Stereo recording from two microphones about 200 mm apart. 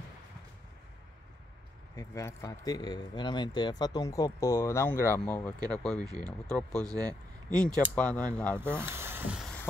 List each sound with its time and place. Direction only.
2.0 s speech: 15° left (ahead or behind)
8.5 s speech: 10° right (ahead or behind)